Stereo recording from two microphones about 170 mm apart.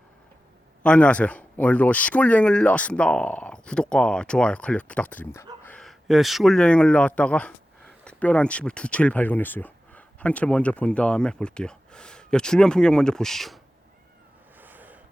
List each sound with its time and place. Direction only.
0.8 s speech: 5° left (ahead or behind)
14.6 s gasp: 10° right (ahead or behind)